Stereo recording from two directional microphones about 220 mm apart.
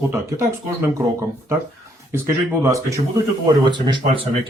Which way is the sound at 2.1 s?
10° right (ahead or behind).